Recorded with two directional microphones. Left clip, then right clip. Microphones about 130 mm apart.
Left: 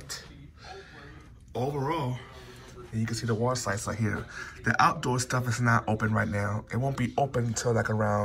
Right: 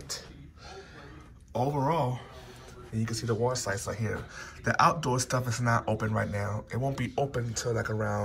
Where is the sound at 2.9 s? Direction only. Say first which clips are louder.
Left 1 dB; 25° right (ahead or behind).